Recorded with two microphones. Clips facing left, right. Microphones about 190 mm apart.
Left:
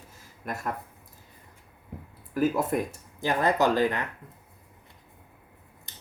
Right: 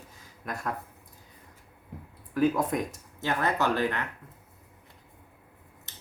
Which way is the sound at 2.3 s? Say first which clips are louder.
Even; 5° left (ahead or behind).